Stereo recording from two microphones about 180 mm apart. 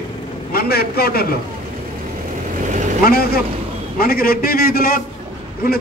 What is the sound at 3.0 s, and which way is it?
A man's voice, 60° left (ahead or behind).